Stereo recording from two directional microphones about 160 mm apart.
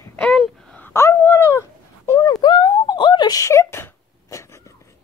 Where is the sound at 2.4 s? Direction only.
30° left (ahead or behind).